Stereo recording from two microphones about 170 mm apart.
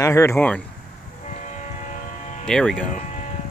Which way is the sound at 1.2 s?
45° left (ahead or behind).